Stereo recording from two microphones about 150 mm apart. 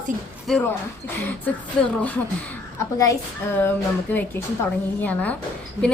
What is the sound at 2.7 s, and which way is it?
A woman's voice, 20° left (ahead or behind).